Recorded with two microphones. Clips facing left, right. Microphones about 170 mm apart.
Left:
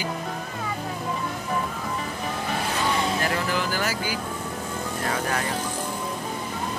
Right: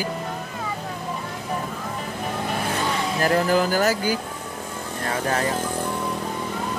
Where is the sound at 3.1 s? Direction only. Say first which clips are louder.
Right 6 dB; 40° right (ahead or behind).